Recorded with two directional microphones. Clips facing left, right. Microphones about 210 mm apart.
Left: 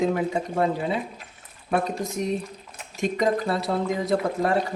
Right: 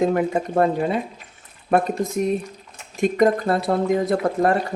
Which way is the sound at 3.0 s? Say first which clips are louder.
Right 5 dB; 55° right (ahead or behind).